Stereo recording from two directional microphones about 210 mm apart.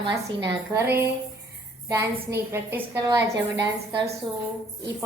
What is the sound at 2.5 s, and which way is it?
A child's voice, 10° right (ahead or behind).